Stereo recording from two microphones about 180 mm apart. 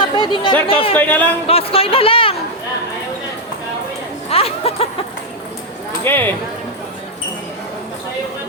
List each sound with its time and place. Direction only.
0.2 s speech: 30° left (ahead or behind)
0.9 s speech: 10° left (ahead or behind)
1.5 s speech: 30° left (ahead or behind)
4.3 s speech: 35° left (ahead or behind)
6.1 s speech: 10° left (ahead or behind)